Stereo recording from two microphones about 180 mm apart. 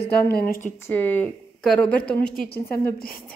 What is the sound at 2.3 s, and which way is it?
Speech, 55° left (ahead or behind).